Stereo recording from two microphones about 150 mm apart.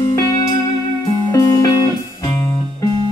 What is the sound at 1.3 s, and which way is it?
Music, 20° left (ahead or behind).